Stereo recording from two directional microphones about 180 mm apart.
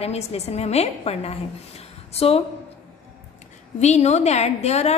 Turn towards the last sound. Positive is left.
turn(degrees=35)  # may be behind; listen again after turning